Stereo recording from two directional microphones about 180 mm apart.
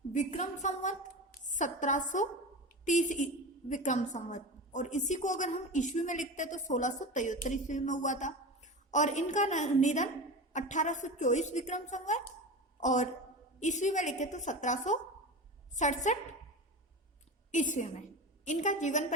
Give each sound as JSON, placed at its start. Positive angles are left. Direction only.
{"t": 0.1, "sound": "a woman's voice", "side_deg": 40}
{"t": 17.5, "sound": "a woman's voice", "side_deg": 45}